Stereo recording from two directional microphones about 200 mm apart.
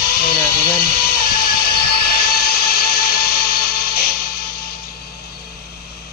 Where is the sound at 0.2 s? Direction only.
50° left (ahead or behind).